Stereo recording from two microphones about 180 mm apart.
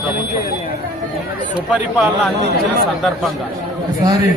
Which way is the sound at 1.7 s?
5° right (ahead or behind).